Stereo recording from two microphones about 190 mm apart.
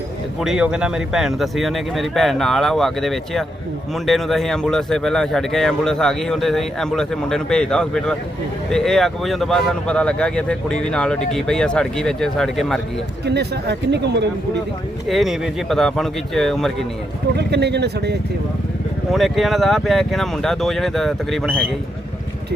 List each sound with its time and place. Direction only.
0.3 s speech: centre (ahead or behind)
13.2 s speech: 60° right (ahead or behind)
15.0 s speech: centre (ahead or behind)
17.3 s speech: 60° right (ahead or behind)
19.1 s speech: centre (ahead or behind)